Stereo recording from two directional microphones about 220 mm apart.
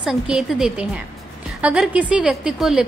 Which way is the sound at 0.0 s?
5° right (ahead or behind).